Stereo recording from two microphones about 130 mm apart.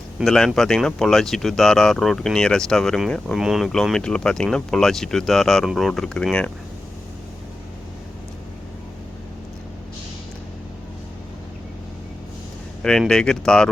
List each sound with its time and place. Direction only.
0.2 s speech: centre (ahead or behind)
12.8 s speech: 5° left (ahead or behind)